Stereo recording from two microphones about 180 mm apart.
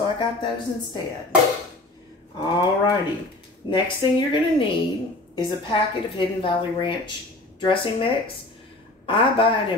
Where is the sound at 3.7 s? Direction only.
25° left (ahead or behind).